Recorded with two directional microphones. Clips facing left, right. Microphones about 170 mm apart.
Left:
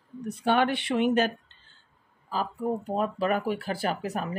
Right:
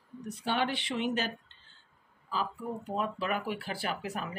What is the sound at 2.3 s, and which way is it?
Speech, 40° left (ahead or behind).